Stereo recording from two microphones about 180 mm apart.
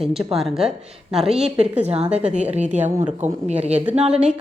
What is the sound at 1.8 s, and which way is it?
A woman's voice, 35° right (ahead or behind).